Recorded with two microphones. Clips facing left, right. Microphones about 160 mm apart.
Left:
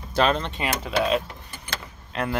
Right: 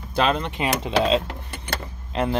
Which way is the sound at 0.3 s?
15° right (ahead or behind).